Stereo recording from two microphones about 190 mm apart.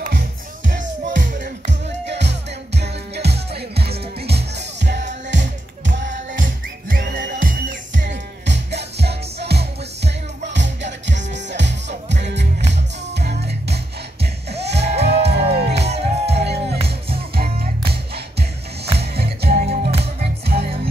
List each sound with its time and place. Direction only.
0.0 s music: 50° right (ahead or behind)
1.4 s music: 65° right (ahead or behind)
6.9 s music: 55° right (ahead or behind)
7.9 s music: 70° right (ahead or behind)
12.7 s music: 60° right (ahead or behind)
15.7 s music: 35° right (ahead or behind)
16.3 s music: 60° right (ahead or behind)
18.9 s music: 55° right (ahead or behind)